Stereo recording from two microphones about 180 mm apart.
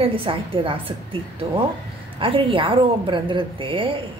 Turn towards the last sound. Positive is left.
turn(degrees=-30)  # may be behind; listen again after turning